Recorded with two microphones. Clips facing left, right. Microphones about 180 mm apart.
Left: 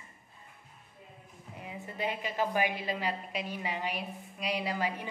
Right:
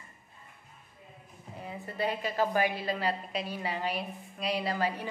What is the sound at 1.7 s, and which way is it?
A woman's voice, 15° left (ahead or behind).